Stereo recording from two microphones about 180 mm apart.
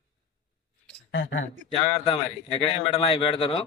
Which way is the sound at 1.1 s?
90° left.